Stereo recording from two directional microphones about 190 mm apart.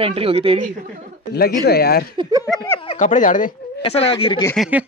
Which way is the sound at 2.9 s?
40° left (ahead or behind).